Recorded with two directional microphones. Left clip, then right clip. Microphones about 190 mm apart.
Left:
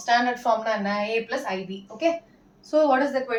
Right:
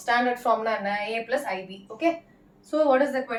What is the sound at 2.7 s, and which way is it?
Speech, 15° right (ahead or behind).